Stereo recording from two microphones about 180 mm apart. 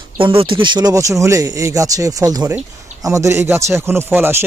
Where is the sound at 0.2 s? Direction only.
30° right (ahead or behind).